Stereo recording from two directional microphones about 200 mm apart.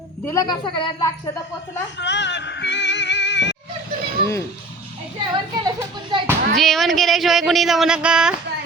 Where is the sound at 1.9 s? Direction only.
60° left (ahead or behind).